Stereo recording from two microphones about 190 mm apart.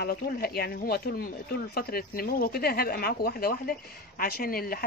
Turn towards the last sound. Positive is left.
turn(degrees=50)  # may be behind; listen again after turning